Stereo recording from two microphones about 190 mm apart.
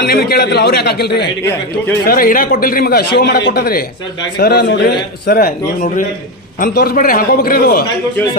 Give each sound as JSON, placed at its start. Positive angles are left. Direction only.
{"t": 0.1, "sound": "a man's voice", "side_deg": 55}
{"t": 5.8, "sound": "a man's voice", "side_deg": 40}